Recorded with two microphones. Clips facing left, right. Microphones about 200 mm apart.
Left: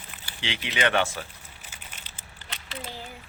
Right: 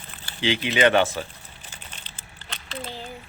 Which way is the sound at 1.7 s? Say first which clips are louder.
Right 3 dB; 10° left (ahead or behind).